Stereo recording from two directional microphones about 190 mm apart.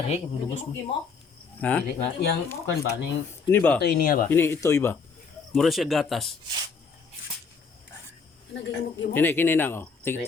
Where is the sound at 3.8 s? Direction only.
50° left (ahead or behind).